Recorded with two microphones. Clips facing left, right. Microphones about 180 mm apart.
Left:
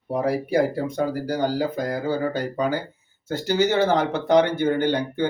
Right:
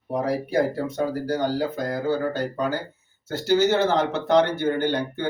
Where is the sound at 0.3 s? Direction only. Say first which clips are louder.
Left 2 dB; 10° left (ahead or behind).